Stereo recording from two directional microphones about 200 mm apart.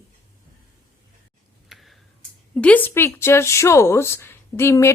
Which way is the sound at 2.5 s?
5° left (ahead or behind).